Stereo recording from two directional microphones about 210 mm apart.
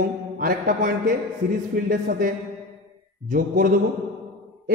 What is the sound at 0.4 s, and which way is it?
A man's voice, 40° right (ahead or behind).